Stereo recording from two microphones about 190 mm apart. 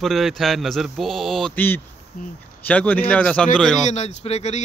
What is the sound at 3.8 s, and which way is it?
Speech, 35° left (ahead or behind).